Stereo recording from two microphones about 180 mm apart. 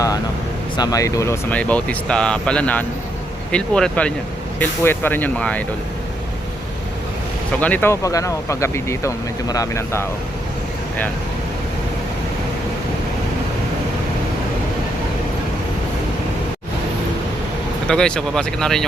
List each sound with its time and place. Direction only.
0.8 s speech: 20° left (ahead or behind)
7.6 s speech: 10° left (ahead or behind)
17.8 s speech: 5° left (ahead or behind)